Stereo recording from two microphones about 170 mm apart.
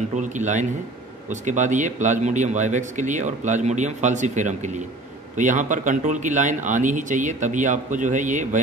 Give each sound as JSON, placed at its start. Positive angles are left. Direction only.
{"t": 0.2, "sound": "speech", "side_deg": -45}